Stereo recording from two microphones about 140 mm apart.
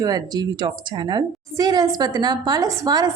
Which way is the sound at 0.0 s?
30° right (ahead or behind).